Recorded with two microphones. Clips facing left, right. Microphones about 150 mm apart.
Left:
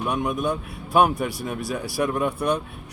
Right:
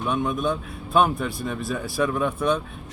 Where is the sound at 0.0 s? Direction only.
15° left (ahead or behind).